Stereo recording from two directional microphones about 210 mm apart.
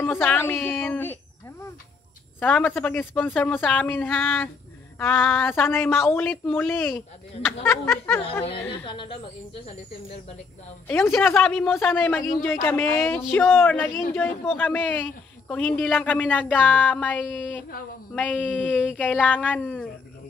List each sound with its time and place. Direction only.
0.0 s a man's voice: 10° left (ahead or behind)
2.4 s a man's voice: 5° left (ahead or behind)
8.5 s speech: 25° left (ahead or behind)
10.9 s a man's voice: 10° left (ahead or behind)